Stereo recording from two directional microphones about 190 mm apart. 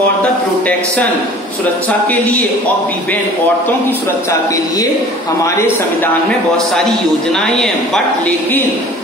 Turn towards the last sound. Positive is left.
turn(degrees=5)  # may be behind; listen again after turning